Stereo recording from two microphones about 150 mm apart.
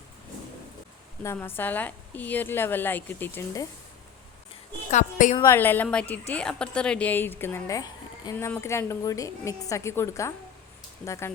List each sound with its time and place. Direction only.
1.2 s a woman's voice: 15° left (ahead or behind)
4.9 s a woman's voice: 55° left (ahead or behind)
5.5 s a woman's voice: 15° left (ahead or behind)